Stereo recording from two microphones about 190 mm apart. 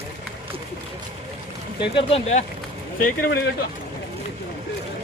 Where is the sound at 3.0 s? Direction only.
55° left (ahead or behind).